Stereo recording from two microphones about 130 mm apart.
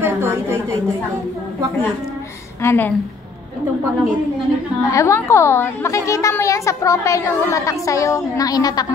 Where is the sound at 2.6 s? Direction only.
20° left (ahead or behind).